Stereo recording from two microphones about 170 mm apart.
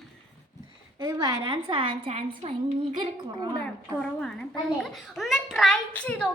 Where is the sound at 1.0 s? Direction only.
20° right (ahead or behind).